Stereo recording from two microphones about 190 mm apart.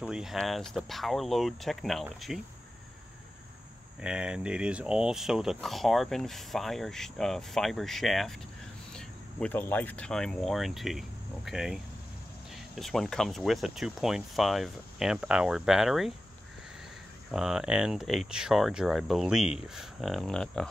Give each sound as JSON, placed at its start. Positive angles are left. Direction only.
{"t": 0.0, "sound": "speech", "side_deg": -5}
{"t": 4.0, "sound": "speech", "side_deg": -5}
{"t": 17.3, "sound": "speech", "side_deg": -5}